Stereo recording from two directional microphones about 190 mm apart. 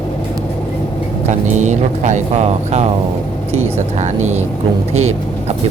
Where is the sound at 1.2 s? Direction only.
40° right (ahead or behind).